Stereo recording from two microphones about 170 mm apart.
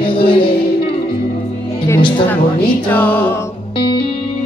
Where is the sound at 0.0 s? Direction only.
30° left (ahead or behind).